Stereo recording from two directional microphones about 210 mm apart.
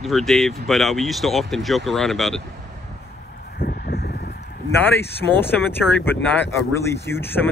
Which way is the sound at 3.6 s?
45° left (ahead or behind).